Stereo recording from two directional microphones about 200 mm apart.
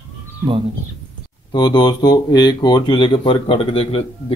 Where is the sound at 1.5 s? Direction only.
20° left (ahead or behind).